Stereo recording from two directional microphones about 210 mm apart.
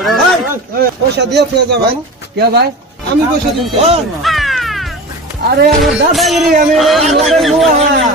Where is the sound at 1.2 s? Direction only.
55° right (ahead or behind).